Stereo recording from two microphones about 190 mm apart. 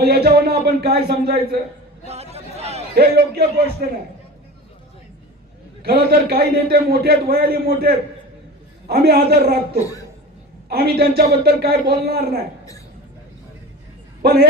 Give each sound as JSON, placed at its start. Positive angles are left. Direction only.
{"t": 0.0, "sound": "speech", "side_deg": -55}
{"t": 2.0, "sound": "a sound", "side_deg": -35}
{"t": 2.9, "sound": "a man's voice", "side_deg": -55}
{"t": 5.8, "sound": "a man's voice", "side_deg": -55}
{"t": 10.7, "sound": "a man's voice", "side_deg": -55}
{"t": 14.2, "sound": "a man's voice", "side_deg": -55}